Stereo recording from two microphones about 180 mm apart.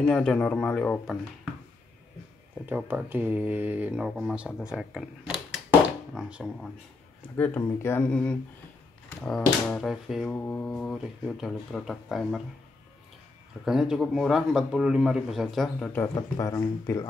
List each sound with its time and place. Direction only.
0.0 s speech: 5° left (ahead or behind)
2.6 s speech: 10° right (ahead or behind)
5.7 s a sound: 5° right (ahead or behind)
7.3 s a man's voice: 10° left (ahead or behind)
10.3 s a man's voice: 10° left (ahead or behind)
13.7 s a man's voice: 5° right (ahead or behind)
16.2 s speech: 20° left (ahead or behind)